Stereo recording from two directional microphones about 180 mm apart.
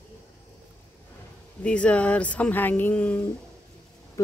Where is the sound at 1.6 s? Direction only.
5° left (ahead or behind).